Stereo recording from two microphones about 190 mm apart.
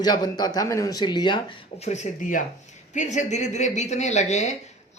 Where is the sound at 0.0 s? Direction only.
20° left (ahead or behind).